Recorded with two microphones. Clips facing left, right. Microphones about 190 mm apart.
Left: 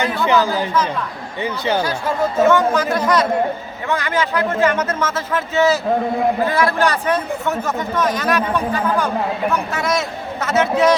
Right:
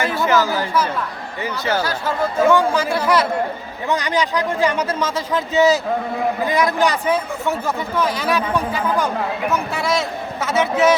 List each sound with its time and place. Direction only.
0.3 s speech: 15° left (ahead or behind)
2.4 s a man's voice: 10° right (ahead or behind)
10.4 s a man's voice: 10° right (ahead or behind)